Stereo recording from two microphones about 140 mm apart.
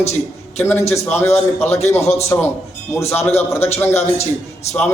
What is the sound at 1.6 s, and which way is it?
Speech, 50° left (ahead or behind).